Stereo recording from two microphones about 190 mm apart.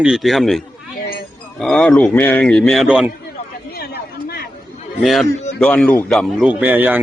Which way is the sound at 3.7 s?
55° left (ahead or behind).